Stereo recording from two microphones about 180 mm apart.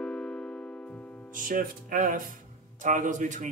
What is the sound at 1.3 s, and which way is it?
Speech, 50° right (ahead or behind).